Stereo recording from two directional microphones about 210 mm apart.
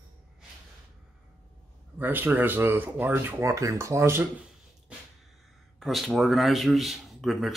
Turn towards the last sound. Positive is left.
turn(degrees=0)  # may be behind; listen again after turning